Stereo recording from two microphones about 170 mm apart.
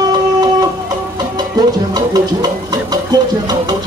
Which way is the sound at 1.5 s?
25° right (ahead or behind).